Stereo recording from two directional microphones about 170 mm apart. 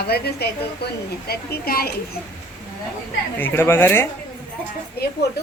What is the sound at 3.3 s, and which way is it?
Speech, 10° left (ahead or behind).